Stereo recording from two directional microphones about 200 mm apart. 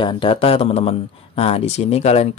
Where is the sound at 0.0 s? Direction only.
25° left (ahead or behind).